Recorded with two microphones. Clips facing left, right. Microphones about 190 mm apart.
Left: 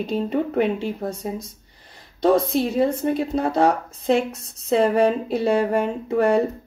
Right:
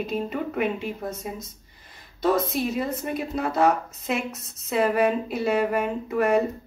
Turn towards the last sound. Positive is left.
turn(degrees=30)  # may be behind; listen again after turning